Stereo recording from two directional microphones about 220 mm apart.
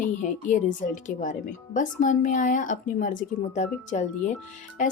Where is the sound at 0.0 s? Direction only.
35° left (ahead or behind).